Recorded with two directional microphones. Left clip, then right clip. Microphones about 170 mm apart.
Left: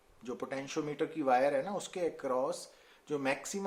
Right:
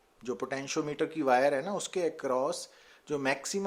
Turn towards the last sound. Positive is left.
turn(degrees=-35)  # may be behind; listen again after turning